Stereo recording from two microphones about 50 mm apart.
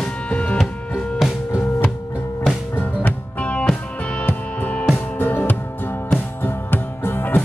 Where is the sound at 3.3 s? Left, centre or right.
Left.